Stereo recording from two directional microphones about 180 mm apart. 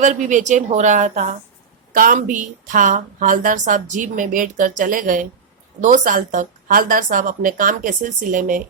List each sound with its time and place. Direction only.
0.0 s a woman's voice: 45° right (ahead or behind)